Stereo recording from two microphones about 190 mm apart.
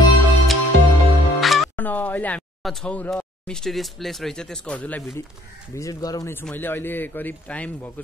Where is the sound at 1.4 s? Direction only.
Centre (ahead or behind).